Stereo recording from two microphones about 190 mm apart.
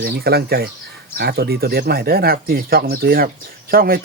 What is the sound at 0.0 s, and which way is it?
Speech, 55° right (ahead or behind).